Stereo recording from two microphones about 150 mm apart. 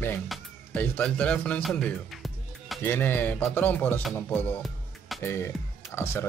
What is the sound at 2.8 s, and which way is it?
Music, 15° left (ahead or behind).